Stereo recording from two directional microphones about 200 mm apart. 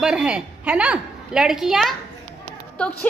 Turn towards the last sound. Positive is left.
turn(degrees=5)  # may be behind; listen again after turning